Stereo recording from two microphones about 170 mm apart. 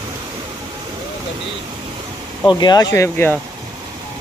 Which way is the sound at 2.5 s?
25° left (ahead or behind).